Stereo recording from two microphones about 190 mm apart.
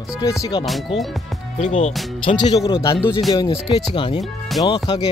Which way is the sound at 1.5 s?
35° left (ahead or behind).